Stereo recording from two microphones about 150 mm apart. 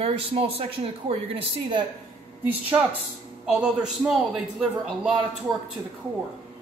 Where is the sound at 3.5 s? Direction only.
5° right (ahead or behind).